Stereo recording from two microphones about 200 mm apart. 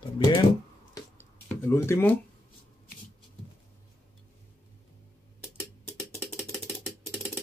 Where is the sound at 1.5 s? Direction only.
15° left (ahead or behind).